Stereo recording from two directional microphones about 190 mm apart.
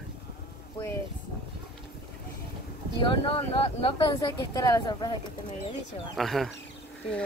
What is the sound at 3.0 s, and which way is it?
Speech, 30° left (ahead or behind).